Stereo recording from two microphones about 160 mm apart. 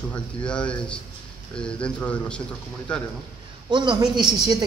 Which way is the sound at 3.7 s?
25° right (ahead or behind).